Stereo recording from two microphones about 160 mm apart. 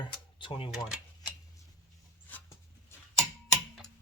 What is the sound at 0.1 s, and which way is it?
Speech, 30° left (ahead or behind).